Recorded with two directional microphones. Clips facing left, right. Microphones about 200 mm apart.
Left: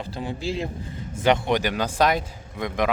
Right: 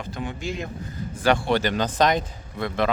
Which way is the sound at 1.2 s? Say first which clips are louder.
Even; 20° left (ahead or behind).